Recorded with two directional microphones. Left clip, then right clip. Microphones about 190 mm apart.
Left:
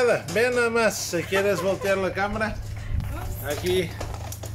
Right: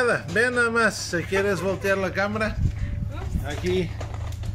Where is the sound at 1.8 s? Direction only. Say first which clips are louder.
Even; 30° right (ahead or behind).